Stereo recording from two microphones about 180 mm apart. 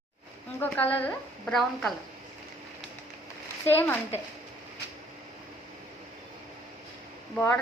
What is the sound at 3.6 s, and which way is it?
Speech, 10° left (ahead or behind).